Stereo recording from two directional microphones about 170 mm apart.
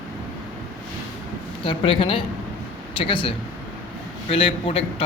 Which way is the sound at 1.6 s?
30° left (ahead or behind).